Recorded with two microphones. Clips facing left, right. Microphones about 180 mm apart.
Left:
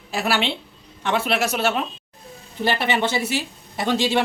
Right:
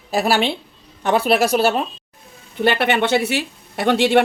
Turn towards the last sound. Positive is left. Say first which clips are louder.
# right 5 dB
turn(degrees=-60)  # may be behind; listen again after turning